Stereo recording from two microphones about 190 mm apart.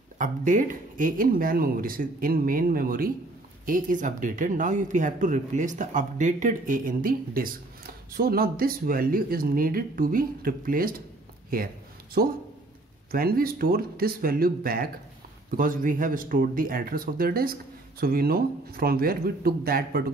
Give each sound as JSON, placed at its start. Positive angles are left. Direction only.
{"t": 0.2, "sound": "speech", "side_deg": -40}
{"t": 11.5, "sound": "a sound", "side_deg": -50}
{"t": 13.1, "sound": "speech", "side_deg": -50}